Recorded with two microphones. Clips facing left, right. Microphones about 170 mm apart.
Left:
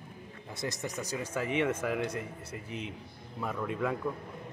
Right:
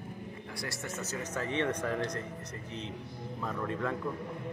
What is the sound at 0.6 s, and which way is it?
Speech, 15° left (ahead or behind).